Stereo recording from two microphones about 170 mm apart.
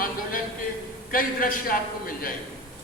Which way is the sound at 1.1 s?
55° left (ahead or behind).